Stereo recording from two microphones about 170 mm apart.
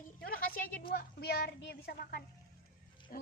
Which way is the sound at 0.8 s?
65° left (ahead or behind).